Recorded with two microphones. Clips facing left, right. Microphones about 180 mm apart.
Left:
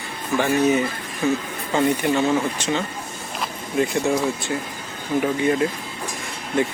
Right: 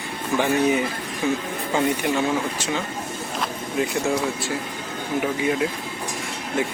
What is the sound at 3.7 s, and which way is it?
Speech, centre (ahead or behind).